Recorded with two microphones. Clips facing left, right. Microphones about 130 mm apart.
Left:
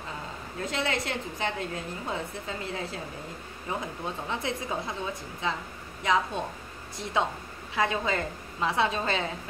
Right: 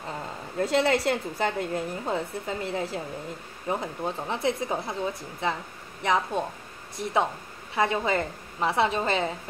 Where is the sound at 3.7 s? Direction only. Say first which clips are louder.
Right 4 dB; 25° right (ahead or behind).